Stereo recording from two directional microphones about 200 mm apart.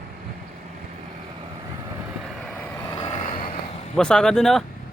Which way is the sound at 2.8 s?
25° left (ahead or behind).